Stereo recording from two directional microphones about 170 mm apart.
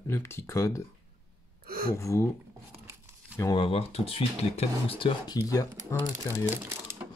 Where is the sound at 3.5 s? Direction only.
30° left (ahead or behind).